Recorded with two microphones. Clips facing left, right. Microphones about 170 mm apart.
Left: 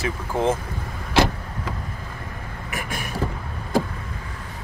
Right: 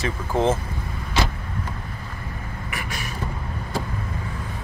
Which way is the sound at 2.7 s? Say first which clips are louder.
Left 3 dB; 50° left (ahead or behind).